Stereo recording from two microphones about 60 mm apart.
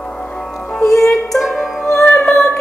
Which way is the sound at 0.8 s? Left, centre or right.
Left.